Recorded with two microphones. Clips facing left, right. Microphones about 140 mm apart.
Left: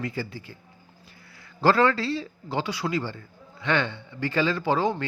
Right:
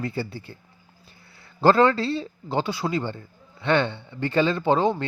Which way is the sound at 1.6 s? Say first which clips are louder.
Right 3 dB; 25° right (ahead or behind).